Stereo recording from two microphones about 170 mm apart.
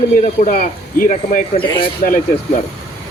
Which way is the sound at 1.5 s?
30° left (ahead or behind).